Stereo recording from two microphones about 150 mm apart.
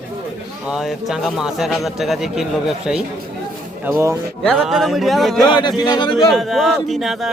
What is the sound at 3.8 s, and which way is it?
Speech, 20° right (ahead or behind).